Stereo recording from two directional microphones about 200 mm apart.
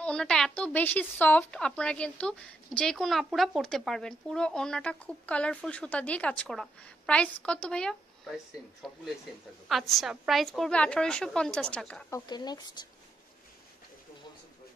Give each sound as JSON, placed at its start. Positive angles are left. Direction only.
{"t": 0.0, "sound": "a woman's voice", "side_deg": 5}
{"t": 9.7, "sound": "a woman's voice", "side_deg": 0}
{"t": 12.3, "sound": "speech", "side_deg": 20}